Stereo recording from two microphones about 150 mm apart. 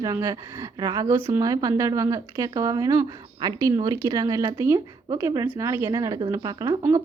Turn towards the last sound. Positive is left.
turn(degrees=-20)  # may be behind; listen again after turning